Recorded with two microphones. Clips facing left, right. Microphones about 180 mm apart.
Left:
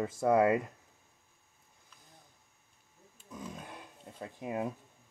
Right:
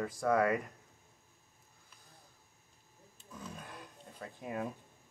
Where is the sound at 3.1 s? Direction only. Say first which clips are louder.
Left 3 dB; 15° left (ahead or behind).